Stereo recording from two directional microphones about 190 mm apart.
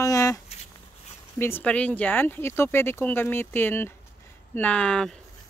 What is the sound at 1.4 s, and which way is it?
Speech, 10° left (ahead or behind).